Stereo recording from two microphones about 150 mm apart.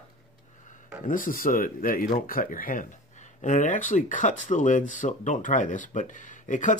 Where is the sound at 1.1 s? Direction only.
65° left (ahead or behind).